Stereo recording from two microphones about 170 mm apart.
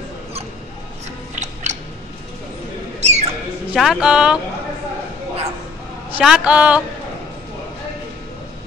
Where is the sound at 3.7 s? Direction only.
Centre (ahead or behind).